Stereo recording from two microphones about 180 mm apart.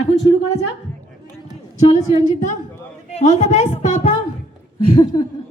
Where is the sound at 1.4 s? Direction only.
35° left (ahead or behind).